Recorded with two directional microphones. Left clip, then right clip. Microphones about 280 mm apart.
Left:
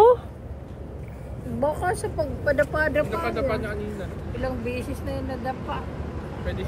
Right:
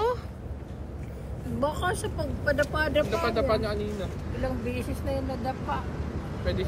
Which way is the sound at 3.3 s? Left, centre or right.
Right.